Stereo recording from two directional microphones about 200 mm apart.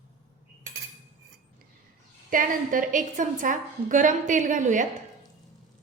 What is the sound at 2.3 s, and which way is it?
A woman's voice, 40° right (ahead or behind).